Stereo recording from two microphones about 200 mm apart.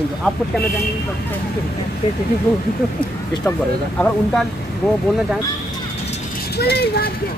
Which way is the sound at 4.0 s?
5° left (ahead or behind).